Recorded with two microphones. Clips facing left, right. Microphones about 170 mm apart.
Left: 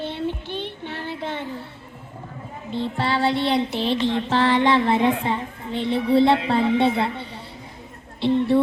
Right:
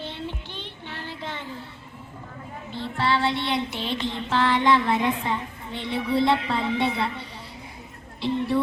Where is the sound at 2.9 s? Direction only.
40° left (ahead or behind).